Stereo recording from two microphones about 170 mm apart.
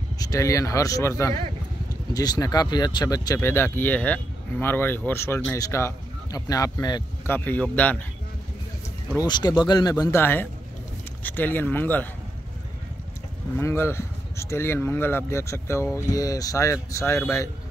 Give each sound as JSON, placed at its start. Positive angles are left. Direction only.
{"t": 0.2, "sound": "speech", "side_deg": 20}
{"t": 7.2, "sound": "speech", "side_deg": 10}
{"t": 9.3, "sound": "speech", "side_deg": 25}
{"t": 13.6, "sound": "speech", "side_deg": 15}